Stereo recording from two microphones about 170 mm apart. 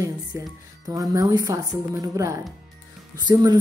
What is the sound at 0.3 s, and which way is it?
A woman's voice, 20° right (ahead or behind).